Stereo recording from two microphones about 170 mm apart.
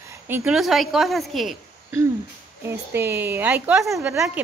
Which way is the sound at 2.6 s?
15° right (ahead or behind).